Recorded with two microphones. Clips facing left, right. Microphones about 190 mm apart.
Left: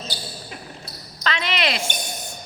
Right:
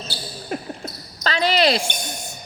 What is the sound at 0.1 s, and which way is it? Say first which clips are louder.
Basketball bounce: right 1 dB; 15° left (ahead or behind).